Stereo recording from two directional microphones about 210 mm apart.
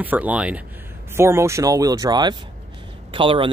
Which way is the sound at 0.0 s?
10° right (ahead or behind).